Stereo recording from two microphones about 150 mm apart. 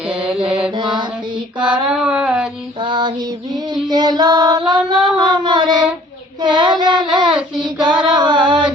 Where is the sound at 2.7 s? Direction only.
30° right (ahead or behind).